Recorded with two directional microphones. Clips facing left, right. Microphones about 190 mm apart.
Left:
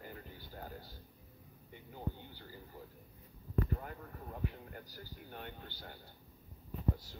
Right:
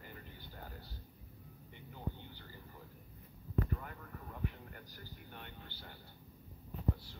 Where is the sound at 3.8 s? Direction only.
35° left (ahead or behind).